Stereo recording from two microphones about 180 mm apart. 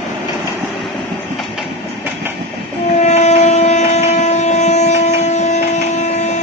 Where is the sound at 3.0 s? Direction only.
35° left (ahead or behind).